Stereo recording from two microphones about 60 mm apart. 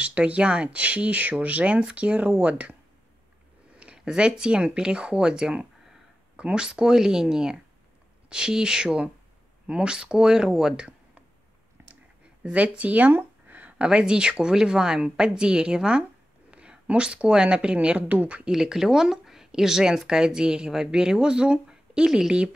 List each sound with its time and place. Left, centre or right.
0.0 s speech: right
3.8 s speech: centre
12.4 s speech: right
18.5 s speech: centre